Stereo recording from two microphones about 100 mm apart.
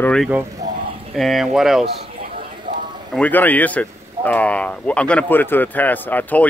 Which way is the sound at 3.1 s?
15° left (ahead or behind).